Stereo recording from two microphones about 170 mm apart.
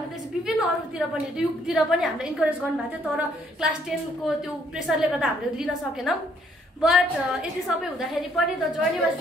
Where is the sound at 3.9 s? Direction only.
Centre (ahead or behind).